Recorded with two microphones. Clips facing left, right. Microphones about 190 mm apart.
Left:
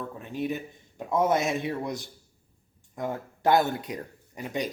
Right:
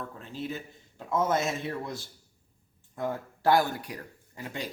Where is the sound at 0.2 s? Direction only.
15° left (ahead or behind).